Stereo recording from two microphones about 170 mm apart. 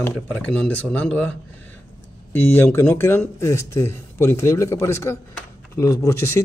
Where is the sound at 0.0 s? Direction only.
10° left (ahead or behind).